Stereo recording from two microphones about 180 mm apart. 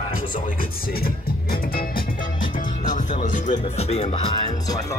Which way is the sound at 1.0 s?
55° left (ahead or behind).